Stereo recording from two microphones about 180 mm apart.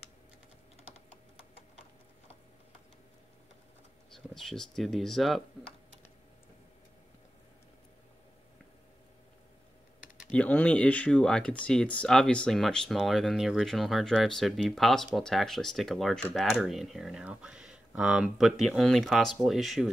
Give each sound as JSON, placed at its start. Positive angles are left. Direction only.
{"t": 4.1, "sound": "speech", "side_deg": 0}
{"t": 10.0, "sound": "typing", "side_deg": 45}
{"t": 10.3, "sound": "speech", "side_deg": 5}